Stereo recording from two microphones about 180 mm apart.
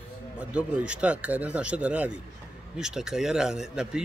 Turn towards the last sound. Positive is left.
turn(degrees=-5)  # may be behind; listen again after turning